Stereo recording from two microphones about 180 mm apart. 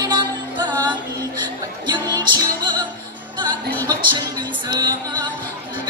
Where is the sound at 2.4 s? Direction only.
25° right (ahead or behind).